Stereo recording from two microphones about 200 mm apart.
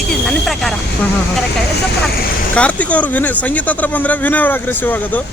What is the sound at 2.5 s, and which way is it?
Speech, 5° left (ahead or behind).